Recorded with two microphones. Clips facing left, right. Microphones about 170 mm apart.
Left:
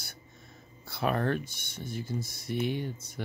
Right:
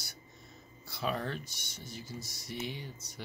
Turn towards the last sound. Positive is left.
turn(degrees=55)  # may be behind; listen again after turning